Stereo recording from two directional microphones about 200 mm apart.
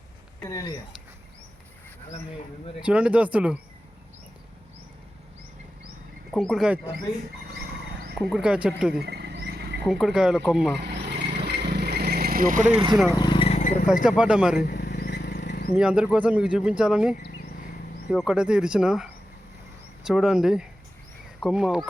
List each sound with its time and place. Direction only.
2.8 s speech: 5° right (ahead or behind)
6.3 s speech: centre (ahead or behind)
8.2 s speech: centre (ahead or behind)
9.0 s rodents: 55° right (ahead or behind)
9.8 s speech: centre (ahead or behind)
11.2 s vehicle: 55° right (ahead or behind)
13.1 s vehicle: 20° left (ahead or behind)
13.6 s a sound: 40° left (ahead or behind)
13.8 s speech: 5° right (ahead or behind)
14.7 s vehicle: 50° left (ahead or behind)
15.7 s speech: 5° right (ahead or behind)
20.1 s speech: centre (ahead or behind)